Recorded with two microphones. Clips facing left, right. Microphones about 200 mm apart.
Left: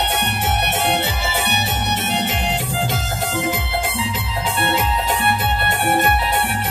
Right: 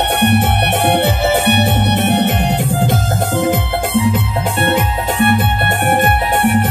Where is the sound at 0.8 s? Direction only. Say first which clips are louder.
Right 8 dB; 55° right (ahead or behind).